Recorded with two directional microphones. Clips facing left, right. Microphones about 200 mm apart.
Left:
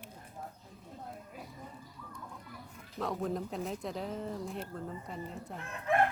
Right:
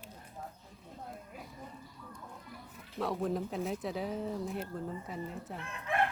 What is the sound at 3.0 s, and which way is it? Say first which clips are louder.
Speech: right 1 dB; centre (ahead or behind).